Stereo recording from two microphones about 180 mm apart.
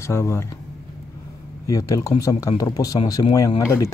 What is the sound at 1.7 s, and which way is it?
Speech, 20° left (ahead or behind).